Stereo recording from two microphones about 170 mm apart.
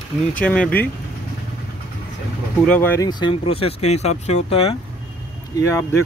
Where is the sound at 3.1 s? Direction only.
30° left (ahead or behind).